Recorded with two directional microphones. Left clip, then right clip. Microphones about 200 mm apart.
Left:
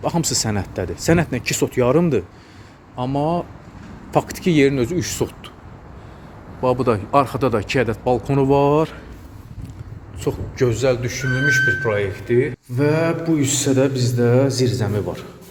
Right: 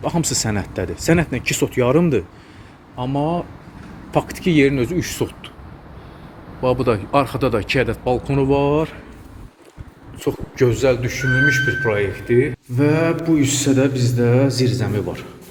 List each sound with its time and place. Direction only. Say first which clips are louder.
0.0 s speech: even; 10° left (ahead or behind)
2.9 s speech: left 1 dB; 20° left (ahead or behind)
6.6 s speech: even; 15° left (ahead or behind)
10.2 s a man's voice: right 2 dB; centre (ahead or behind)